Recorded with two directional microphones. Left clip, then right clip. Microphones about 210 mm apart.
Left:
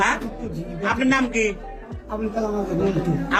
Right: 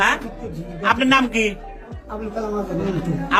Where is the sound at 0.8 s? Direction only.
30° right (ahead or behind).